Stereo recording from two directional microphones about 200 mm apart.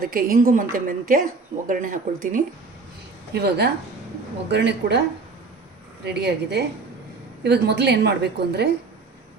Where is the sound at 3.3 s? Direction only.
55° right (ahead or behind).